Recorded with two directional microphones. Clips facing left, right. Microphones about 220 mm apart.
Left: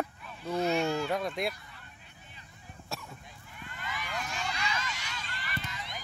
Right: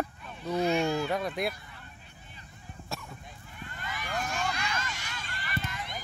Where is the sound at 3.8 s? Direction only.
45° right (ahead or behind).